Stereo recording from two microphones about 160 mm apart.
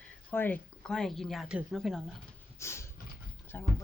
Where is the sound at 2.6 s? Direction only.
15° left (ahead or behind).